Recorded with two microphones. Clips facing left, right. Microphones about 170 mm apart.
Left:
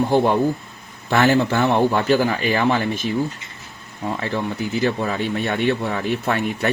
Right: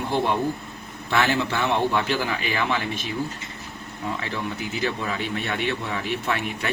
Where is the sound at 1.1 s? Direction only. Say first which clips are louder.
Left 6 dB; 40° left (ahead or behind).